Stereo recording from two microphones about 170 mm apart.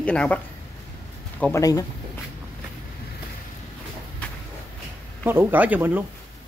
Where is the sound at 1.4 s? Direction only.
15° left (ahead or behind).